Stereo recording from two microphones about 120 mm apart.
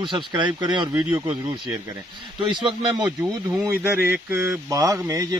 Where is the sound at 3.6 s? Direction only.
20° right (ahead or behind).